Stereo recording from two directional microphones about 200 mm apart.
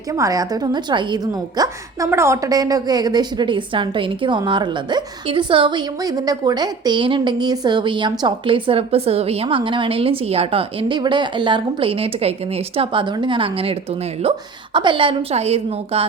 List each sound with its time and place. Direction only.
0.2 s a woman's voice: 15° right (ahead or behind)